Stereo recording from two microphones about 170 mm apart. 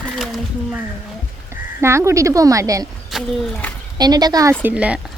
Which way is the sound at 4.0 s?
25° right (ahead or behind).